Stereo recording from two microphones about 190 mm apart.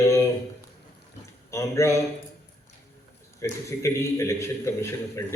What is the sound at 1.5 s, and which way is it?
Speech, 15° left (ahead or behind).